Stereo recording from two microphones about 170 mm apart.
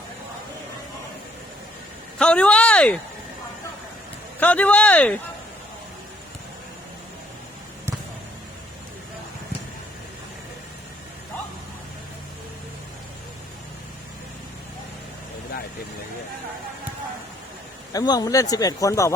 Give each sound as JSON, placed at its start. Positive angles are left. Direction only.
{"t": 2.1, "sound": "speech", "side_deg": 5}
{"t": 4.4, "sound": "speech", "side_deg": 10}
{"t": 17.9, "sound": "speech", "side_deg": 20}